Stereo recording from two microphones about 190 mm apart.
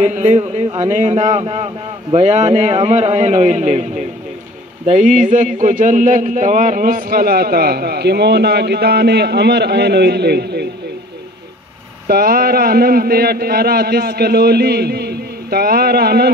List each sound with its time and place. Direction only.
0.0 s a man's voice: 35° right (ahead or behind)
4.8 s a man's voice: 40° right (ahead or behind); by 10.7 s 60° right (ahead or behind)
12.1 s a man's voice: 50° right (ahead or behind)